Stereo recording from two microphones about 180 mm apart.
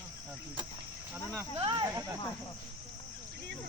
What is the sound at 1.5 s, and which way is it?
Speech, 20° right (ahead or behind).